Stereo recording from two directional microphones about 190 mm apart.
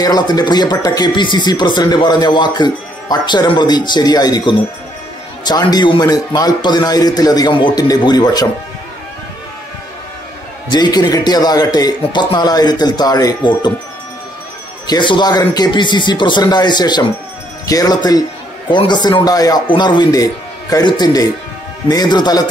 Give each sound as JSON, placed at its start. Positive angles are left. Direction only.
{"t": 0.0, "sound": "speech", "side_deg": 20}
{"t": 10.7, "sound": "speech", "side_deg": 20}
{"t": 14.9, "sound": "speech", "side_deg": 25}